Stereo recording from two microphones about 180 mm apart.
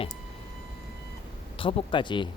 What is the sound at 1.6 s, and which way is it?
Speech, 30° left (ahead or behind).